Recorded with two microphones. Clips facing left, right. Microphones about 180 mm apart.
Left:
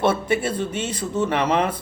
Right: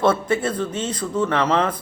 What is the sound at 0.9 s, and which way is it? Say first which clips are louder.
Speech: right 1 dB; 25° left (ahead or behind).